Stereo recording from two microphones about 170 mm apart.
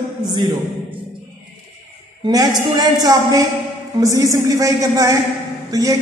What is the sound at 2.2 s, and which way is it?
A man's voice, 20° right (ahead or behind).